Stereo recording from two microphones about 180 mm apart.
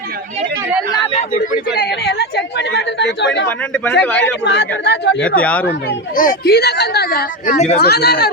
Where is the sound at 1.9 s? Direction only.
65° left (ahead or behind).